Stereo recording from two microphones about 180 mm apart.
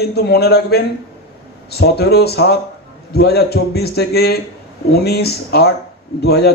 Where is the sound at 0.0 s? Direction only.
65° left (ahead or behind).